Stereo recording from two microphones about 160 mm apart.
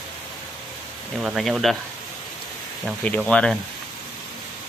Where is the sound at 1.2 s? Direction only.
Centre (ahead or behind).